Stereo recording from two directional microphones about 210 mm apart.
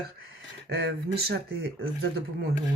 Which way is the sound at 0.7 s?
50° right (ahead or behind).